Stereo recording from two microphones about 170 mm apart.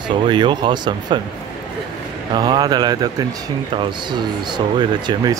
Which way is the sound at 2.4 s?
25° right (ahead or behind).